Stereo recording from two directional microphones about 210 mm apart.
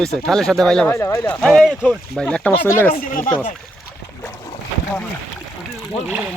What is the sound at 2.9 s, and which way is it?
Speech, 40° left (ahead or behind).